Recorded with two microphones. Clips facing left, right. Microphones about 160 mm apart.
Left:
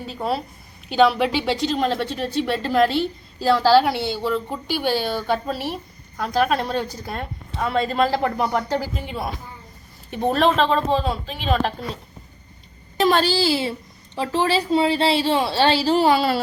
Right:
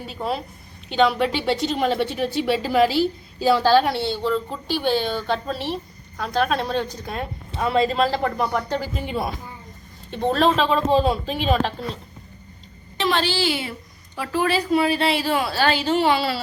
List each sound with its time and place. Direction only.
0.1 s a woman's voice: centre (ahead or behind)
8.5 s speech: 10° left (ahead or behind)
10.1 s a woman's voice: 10° left (ahead or behind); by 11.6 s 10° right (ahead or behind)
13.0 s a child's voice: 40° left (ahead or behind)